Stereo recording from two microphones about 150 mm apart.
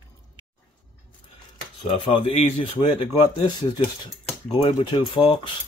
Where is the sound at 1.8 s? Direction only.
40° left (ahead or behind).